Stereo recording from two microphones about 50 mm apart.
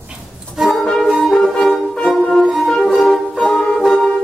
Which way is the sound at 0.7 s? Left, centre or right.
Centre.